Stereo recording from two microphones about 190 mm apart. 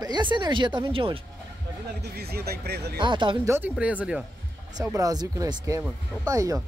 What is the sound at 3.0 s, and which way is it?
Speech, 25° right (ahead or behind).